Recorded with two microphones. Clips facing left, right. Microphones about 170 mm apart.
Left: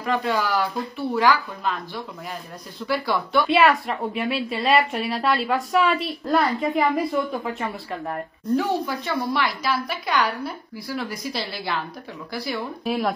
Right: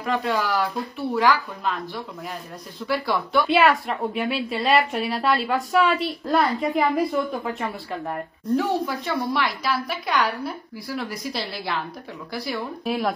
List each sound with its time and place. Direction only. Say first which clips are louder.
0.0 s a woman's voice: left 1 dB; centre (ahead or behind)